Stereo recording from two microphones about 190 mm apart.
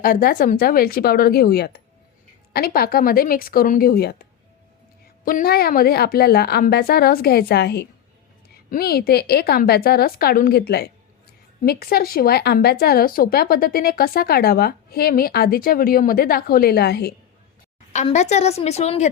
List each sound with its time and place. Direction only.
0.0 s speech: 50° left (ahead or behind)
5.2 s a woman's voice: 50° left (ahead or behind)
17.9 s a woman's voice: 35° left (ahead or behind)